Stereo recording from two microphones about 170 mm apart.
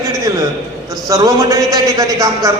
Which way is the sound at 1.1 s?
20° right (ahead or behind).